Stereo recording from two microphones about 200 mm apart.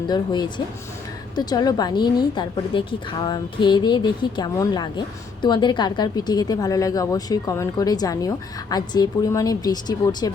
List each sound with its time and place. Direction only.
0.1 s a woman's voice: 20° left (ahead or behind)